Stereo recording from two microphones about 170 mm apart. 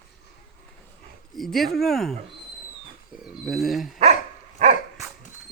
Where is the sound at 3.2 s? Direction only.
Centre (ahead or behind).